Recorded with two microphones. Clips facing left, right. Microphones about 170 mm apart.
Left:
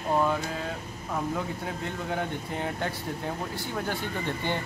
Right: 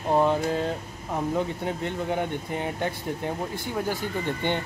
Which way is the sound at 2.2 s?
15° right (ahead or behind).